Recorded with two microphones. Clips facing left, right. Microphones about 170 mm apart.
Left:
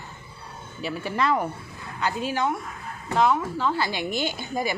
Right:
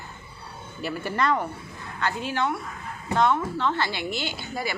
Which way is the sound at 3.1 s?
5° left (ahead or behind).